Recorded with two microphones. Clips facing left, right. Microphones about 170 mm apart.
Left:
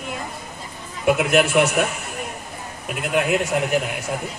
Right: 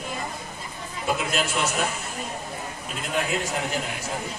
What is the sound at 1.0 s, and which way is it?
Speech, 65° left (ahead or behind).